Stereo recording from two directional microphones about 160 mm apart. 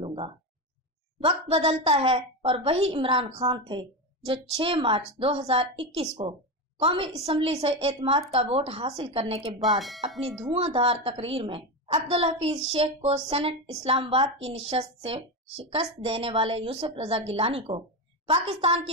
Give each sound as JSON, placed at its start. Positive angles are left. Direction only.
{"t": 0.0, "sound": "a sound", "side_deg": -35}
{"t": 1.2, "sound": "a woman's voice", "side_deg": -35}
{"t": 9.6, "sound": "speech", "side_deg": 0}
{"t": 10.5, "sound": "a woman's voice", "side_deg": -35}